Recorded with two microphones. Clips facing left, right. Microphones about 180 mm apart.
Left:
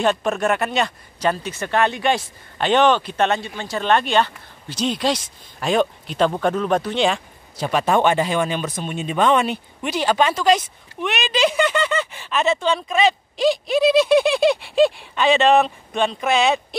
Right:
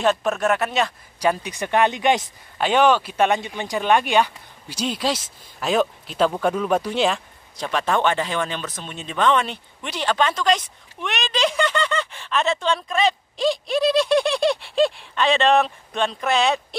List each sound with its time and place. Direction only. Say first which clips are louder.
0.0 s speech: left 1 dB; centre (ahead or behind)
1.2 s speech: even; 15° right (ahead or behind); by 16.6 s centre (ahead or behind)